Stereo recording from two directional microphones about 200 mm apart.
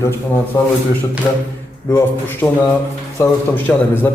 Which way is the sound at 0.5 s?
15° left (ahead or behind).